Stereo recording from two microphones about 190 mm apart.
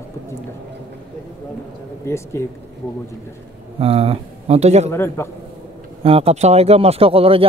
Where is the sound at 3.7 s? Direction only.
30° right (ahead or behind).